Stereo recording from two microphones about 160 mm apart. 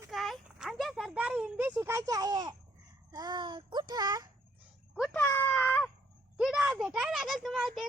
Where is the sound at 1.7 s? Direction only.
20° right (ahead or behind).